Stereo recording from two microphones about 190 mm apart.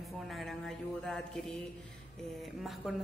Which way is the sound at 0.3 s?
Centre (ahead or behind).